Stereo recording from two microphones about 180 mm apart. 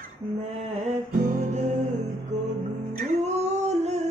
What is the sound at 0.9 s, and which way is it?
Music, 45° right (ahead or behind).